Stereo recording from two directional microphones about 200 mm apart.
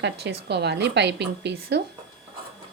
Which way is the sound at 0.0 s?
55° right (ahead or behind).